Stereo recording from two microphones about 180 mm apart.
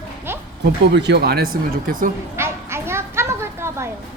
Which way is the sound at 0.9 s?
70° right (ahead or behind).